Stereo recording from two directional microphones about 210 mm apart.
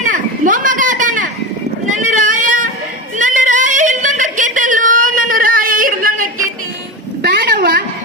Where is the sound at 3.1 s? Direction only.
35° right (ahead or behind).